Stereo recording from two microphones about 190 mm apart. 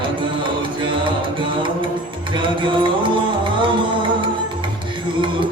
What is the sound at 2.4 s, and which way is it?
Music, 25° right (ahead or behind).